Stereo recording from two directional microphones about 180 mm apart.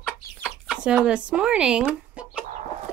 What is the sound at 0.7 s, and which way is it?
Speech, 5° right (ahead or behind).